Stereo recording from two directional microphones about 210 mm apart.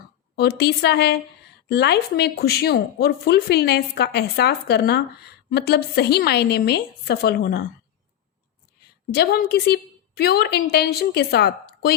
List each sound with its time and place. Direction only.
0.3 s speech: 50° left (ahead or behind)
9.1 s speech: 50° left (ahead or behind)